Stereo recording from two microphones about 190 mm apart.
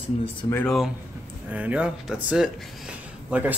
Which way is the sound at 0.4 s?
15° left (ahead or behind).